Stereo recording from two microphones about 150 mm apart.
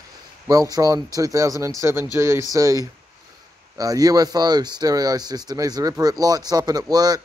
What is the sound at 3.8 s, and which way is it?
Speech, 25° right (ahead or behind).